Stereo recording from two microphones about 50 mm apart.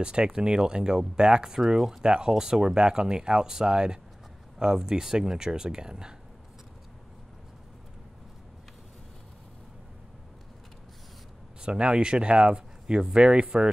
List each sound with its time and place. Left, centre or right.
0.0 s speech: centre
11.6 s speech: centre